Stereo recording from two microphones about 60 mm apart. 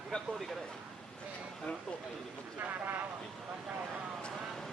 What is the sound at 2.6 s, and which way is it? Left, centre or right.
Vehicle, right.